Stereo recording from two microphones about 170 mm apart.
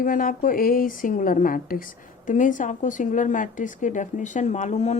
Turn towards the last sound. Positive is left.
turn(degrees=40)  # may be behind; listen again after turning